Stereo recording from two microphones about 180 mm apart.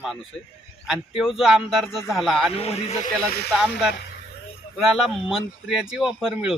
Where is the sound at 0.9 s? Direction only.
5° right (ahead or behind).